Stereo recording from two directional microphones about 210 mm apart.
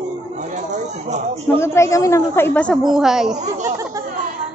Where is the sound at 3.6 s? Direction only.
15° right (ahead or behind).